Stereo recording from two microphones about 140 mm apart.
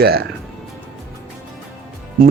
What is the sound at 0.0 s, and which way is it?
Speech, 90° right.